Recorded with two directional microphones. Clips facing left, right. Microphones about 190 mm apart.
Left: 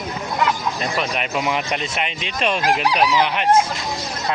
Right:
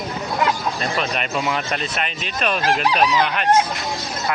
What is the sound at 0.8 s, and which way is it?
Speech, 10° left (ahead or behind).